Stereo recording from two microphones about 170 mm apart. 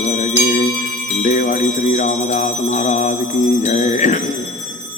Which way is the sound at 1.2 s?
45° left (ahead or behind).